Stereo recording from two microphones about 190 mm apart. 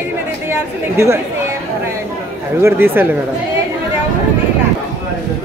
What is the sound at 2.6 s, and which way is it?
Speech, 15° right (ahead or behind).